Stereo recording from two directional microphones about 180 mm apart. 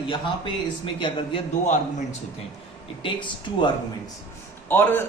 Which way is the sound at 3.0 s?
25° left (ahead or behind).